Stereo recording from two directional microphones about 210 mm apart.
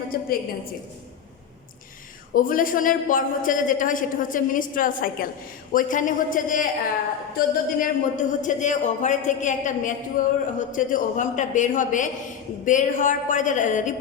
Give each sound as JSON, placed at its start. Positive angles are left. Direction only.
{"t": 0.1, "sound": "a woman's voice", "side_deg": 45}
{"t": 2.3, "sound": "a woman's voice", "side_deg": 40}